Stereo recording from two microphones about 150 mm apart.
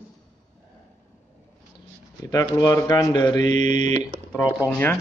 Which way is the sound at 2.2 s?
20° left (ahead or behind).